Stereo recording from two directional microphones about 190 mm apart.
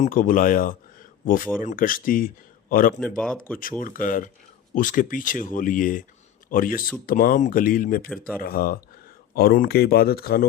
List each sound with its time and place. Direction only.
0.0 s speech: 45° left (ahead or behind)
3.2 s speech: 5° left (ahead or behind)
3.6 s speech: 45° left (ahead or behind)